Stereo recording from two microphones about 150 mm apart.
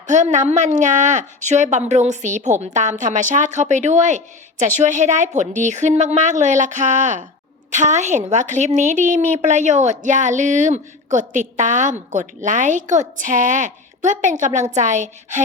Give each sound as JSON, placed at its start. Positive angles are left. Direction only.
{"t": 0.1, "sound": "a woman's voice", "side_deg": -55}